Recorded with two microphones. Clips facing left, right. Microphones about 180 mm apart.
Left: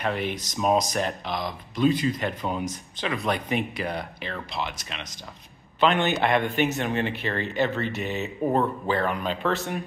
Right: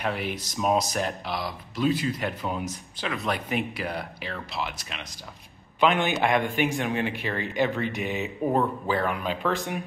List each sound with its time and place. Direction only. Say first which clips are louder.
0.0 s speech: left 2 dB; 5° right (ahead or behind)